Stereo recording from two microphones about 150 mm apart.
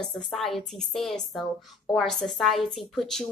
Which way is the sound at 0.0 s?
Centre (ahead or behind).